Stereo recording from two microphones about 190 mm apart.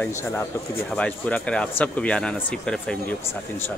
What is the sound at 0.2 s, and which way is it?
A man's voice, 15° left (ahead or behind).